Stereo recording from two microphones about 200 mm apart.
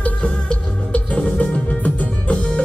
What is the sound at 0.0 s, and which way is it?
Music, 5° left (ahead or behind).